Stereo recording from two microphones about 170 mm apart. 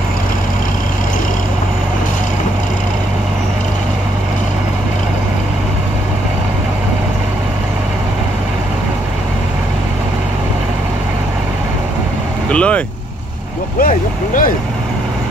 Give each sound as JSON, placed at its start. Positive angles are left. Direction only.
{"t": 12.4, "sound": "speech", "side_deg": 5}
{"t": 13.7, "sound": "vehicle", "side_deg": 50}